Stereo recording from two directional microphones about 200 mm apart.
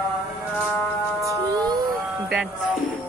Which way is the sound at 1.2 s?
15° right (ahead or behind).